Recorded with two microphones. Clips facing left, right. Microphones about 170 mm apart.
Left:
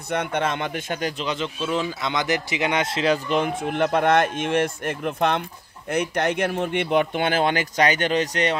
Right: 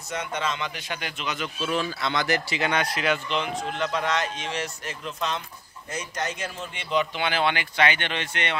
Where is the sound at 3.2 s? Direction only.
50° left (ahead or behind).